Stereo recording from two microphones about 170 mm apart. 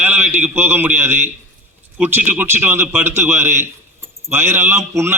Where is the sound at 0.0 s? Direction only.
10° right (ahead or behind).